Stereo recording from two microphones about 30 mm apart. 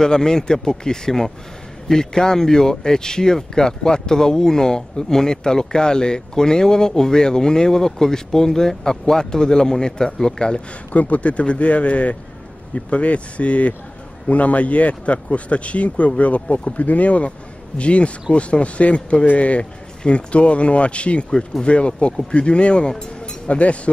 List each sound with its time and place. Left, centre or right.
0.0 s speech: left
10.9 s speech: left
22.9 s a sound: left
23.5 s speech: left